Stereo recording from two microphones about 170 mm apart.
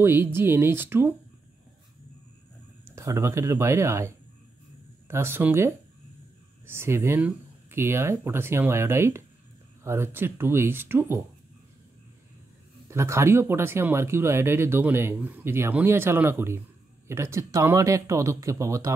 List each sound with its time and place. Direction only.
0.0 s speech: 15° right (ahead or behind)
3.0 s speech: 15° right (ahead or behind)
12.9 s speech: 15° right (ahead or behind)